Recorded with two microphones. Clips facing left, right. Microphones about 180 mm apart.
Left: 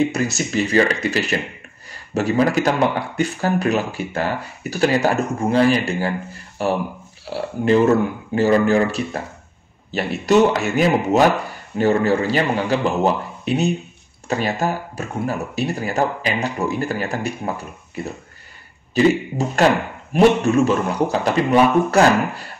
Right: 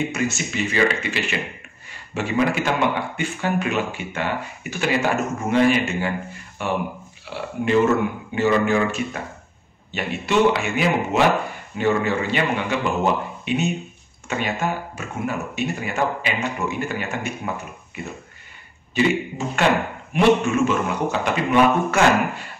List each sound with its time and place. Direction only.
0.0 s speech: 35° left (ahead or behind)
18.9 s speech: 40° left (ahead or behind)